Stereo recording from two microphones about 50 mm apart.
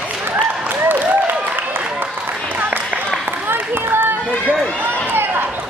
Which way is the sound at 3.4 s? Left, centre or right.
Right.